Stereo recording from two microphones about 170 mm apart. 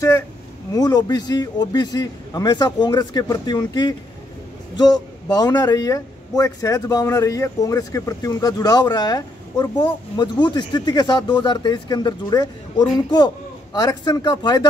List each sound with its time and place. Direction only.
0.7 s speech: 20° left (ahead or behind)